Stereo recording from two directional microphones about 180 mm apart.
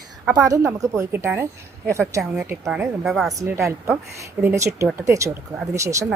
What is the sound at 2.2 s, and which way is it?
Speech, centre (ahead or behind).